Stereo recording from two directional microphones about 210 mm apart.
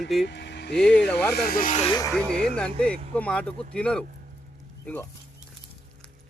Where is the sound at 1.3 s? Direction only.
45° left (ahead or behind).